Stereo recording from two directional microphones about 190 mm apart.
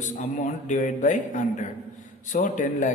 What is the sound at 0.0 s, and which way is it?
A man's voice, 40° left (ahead or behind).